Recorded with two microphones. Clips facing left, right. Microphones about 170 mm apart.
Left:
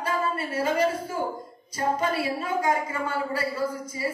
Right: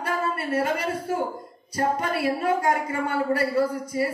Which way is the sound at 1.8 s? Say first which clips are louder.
Right 1 dB; 60° right (ahead or behind).